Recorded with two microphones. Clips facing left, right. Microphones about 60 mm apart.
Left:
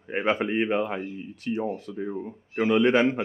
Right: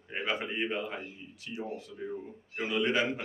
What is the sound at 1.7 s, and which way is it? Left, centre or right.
Mantra, left.